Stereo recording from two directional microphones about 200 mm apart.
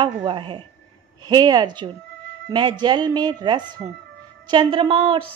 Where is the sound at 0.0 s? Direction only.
25° right (ahead or behind).